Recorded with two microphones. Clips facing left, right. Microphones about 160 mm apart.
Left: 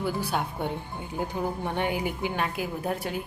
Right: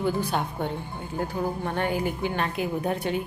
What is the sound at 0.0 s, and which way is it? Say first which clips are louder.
A woman's voice: right 3 dB; 5° left (ahead or behind).